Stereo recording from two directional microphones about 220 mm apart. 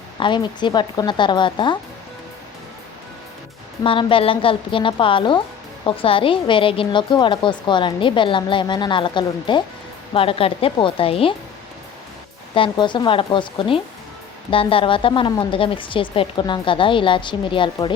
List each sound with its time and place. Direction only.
0.2 s a woman's voice: 20° left (ahead or behind)
3.8 s a woman's voice: 25° left (ahead or behind)
12.5 s a woman's voice: 20° left (ahead or behind)